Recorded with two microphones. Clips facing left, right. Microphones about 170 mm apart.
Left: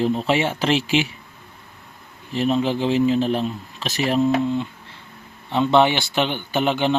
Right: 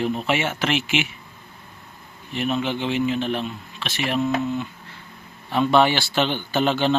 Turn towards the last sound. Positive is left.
turn(degrees=15)  # may be behind; listen again after turning